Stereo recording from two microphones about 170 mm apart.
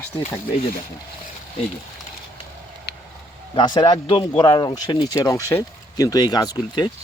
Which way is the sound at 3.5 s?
30° left (ahead or behind).